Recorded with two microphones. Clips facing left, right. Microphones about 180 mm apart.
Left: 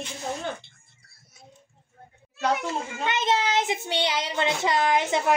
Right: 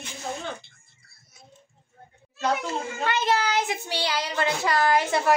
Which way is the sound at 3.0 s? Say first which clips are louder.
Even; 20° left (ahead or behind).